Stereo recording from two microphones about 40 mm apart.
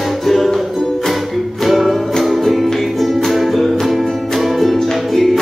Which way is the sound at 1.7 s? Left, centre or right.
Centre.